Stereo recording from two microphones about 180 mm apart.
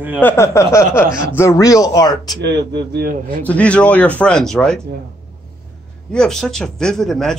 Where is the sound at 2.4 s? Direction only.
65° right (ahead or behind).